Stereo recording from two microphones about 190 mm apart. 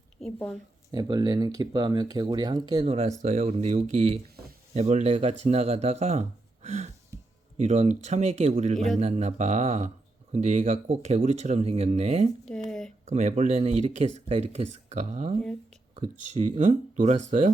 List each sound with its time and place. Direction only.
0.2 s a woman's voice: 5° left (ahead or behind)
0.9 s speech: 20° right (ahead or behind)
12.5 s a sound: 5° left (ahead or behind)
13.1 s speech: 35° right (ahead or behind)